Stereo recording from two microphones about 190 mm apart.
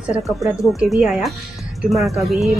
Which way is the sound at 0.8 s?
Centre (ahead or behind).